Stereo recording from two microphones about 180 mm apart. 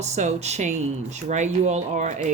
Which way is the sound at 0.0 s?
40° right (ahead or behind).